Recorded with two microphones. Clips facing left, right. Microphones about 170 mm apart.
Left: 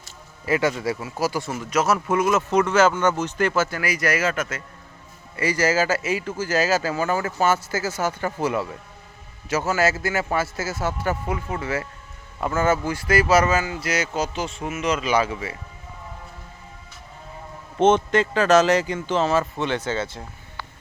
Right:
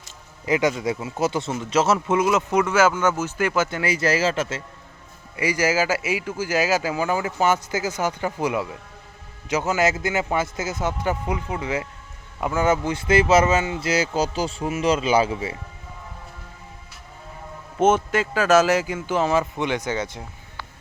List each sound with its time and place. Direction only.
0.4 s speech: 15° right (ahead or behind)
5.4 s speech: 10° right (ahead or behind)
17.7 s speech: 5° right (ahead or behind)